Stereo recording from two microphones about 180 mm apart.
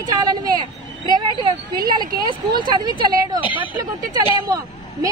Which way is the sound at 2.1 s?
25° right (ahead or behind).